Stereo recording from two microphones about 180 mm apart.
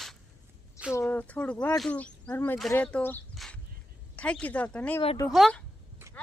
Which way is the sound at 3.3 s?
Centre (ahead or behind).